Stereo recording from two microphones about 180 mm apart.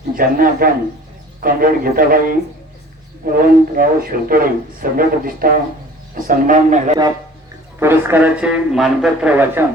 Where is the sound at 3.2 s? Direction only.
55° right (ahead or behind).